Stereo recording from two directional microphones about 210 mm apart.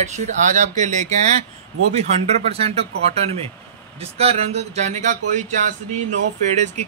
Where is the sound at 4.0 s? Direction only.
30° right (ahead or behind).